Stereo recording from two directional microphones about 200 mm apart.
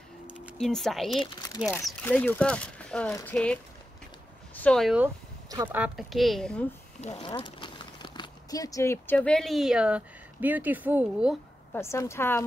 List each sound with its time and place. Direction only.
0.3 s a woman's voice: centre (ahead or behind)
4.6 s speech: 5° left (ahead or behind)
5.5 s speech: 20° right (ahead or behind)
5.8 s speech: centre (ahead or behind)
7.0 s speech: 30° left (ahead or behind); by 11.3 s 5° right (ahead or behind)
11.7 s a woman's voice: 15° left (ahead or behind)